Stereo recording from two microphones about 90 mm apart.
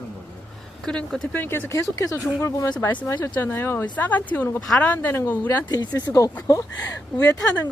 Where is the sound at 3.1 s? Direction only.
25° left (ahead or behind).